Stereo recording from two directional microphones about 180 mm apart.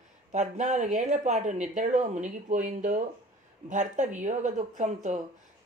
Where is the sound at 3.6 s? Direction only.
40° right (ahead or behind).